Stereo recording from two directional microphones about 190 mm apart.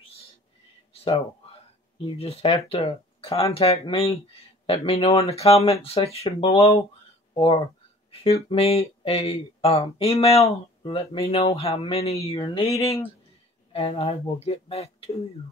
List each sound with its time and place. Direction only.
2.0 s speech: 30° left (ahead or behind)